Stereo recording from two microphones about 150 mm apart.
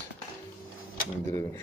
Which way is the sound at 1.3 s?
20° left (ahead or behind).